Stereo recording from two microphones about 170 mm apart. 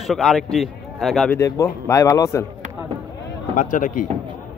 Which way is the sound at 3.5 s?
50° left (ahead or behind).